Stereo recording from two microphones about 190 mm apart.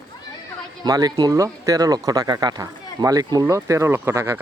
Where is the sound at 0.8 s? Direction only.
20° right (ahead or behind).